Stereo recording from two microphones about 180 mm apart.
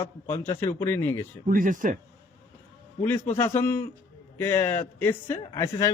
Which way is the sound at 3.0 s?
10° left (ahead or behind).